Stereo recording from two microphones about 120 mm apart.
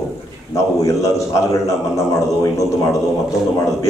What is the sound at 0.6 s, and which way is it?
A man's voice, 25° left (ahead or behind).